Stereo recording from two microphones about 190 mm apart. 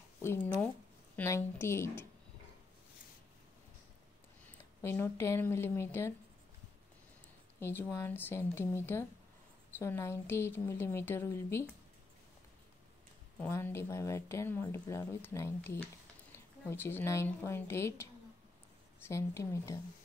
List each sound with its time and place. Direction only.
0.2 s speech: 10° left (ahead or behind)
4.5 s speech: 10° left (ahead or behind)
7.6 s speech: 10° left (ahead or behind)
13.4 s speech: 10° left (ahead or behind)
19.0 s speech: 15° left (ahead or behind)